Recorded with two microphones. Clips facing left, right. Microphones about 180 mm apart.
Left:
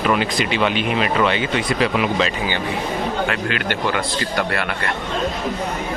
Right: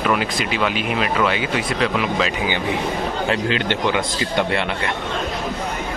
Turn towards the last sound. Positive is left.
turn(degrees=-20)  # may be behind; listen again after turning